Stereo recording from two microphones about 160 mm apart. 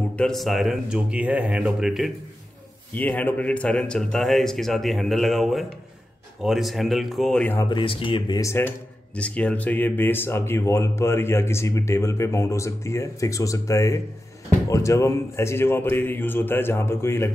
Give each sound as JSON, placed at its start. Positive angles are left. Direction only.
{"t": 0.2, "sound": "a man's voice", "side_deg": 0}
{"t": 2.9, "sound": "a man's voice", "side_deg": 10}
{"t": 7.7, "sound": "speech", "side_deg": 30}
{"t": 8.4, "sound": "speech", "side_deg": 15}